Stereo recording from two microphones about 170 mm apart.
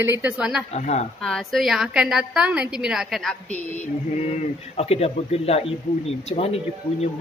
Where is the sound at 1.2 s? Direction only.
Centre (ahead or behind).